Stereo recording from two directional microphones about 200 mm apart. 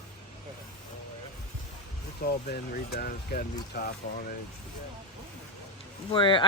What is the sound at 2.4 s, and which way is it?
Speech, 50° left (ahead or behind).